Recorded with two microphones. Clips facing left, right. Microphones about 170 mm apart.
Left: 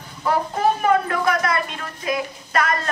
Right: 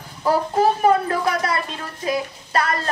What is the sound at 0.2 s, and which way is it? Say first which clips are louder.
A woman's voice: right 2 dB; 30° right (ahead or behind).